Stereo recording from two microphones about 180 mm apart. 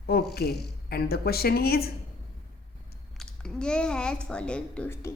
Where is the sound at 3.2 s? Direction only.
5° left (ahead or behind).